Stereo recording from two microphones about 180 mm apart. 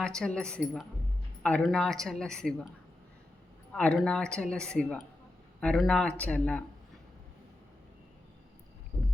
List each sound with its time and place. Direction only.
0.0 s a woman's voice: 5° left (ahead or behind)
3.7 s a woman's voice: 5° left (ahead or behind)